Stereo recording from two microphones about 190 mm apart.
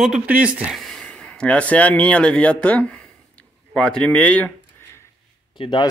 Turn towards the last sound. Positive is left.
turn(degrees=25)  # may be behind; listen again after turning